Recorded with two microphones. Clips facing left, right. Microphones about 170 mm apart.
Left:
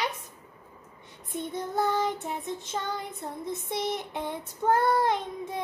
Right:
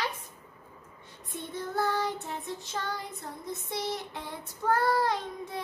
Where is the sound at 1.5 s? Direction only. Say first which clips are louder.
Left 2 dB; 20° left (ahead or behind).